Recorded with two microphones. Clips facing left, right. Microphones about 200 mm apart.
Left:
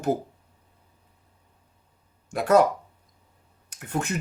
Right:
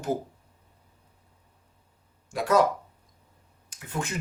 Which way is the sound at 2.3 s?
60° left (ahead or behind).